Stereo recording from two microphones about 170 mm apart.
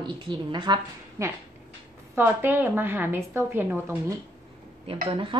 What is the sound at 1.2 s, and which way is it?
A woman's voice, 15° right (ahead or behind).